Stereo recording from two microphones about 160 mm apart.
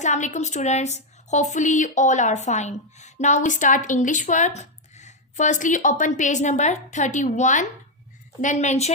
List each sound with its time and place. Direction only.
0.0 s speech: 50° left (ahead or behind)